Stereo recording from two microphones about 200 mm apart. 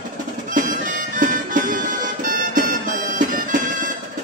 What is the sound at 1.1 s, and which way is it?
Music, 40° right (ahead or behind).